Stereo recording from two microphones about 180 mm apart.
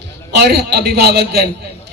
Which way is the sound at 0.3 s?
65° right (ahead or behind).